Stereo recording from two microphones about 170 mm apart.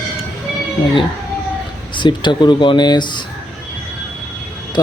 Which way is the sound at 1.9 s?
25° left (ahead or behind).